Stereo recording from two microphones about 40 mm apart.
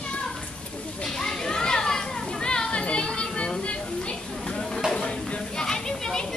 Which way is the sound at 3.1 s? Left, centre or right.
Left.